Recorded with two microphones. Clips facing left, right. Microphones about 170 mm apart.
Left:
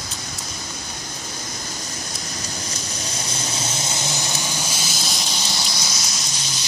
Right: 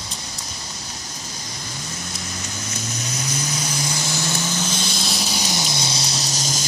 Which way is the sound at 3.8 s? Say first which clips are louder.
Right 1 dB; 20° left (ahead or behind).